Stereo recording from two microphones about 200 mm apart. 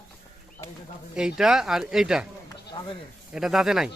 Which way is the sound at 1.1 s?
5° right (ahead or behind).